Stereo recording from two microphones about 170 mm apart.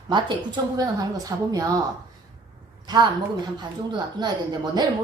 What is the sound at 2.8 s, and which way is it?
Speech, 25° right (ahead or behind).